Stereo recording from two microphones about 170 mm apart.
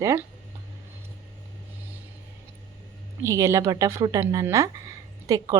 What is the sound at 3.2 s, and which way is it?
Speech, 20° right (ahead or behind).